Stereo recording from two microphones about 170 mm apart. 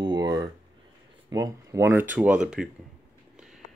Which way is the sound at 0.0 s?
25° right (ahead or behind).